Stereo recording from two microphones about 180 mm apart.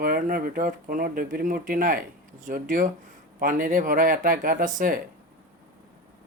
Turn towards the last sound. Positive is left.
turn(degrees=-50)  # may be behind; listen again after turning